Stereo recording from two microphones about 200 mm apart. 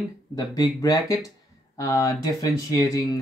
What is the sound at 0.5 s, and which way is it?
Speech, 20° left (ahead or behind).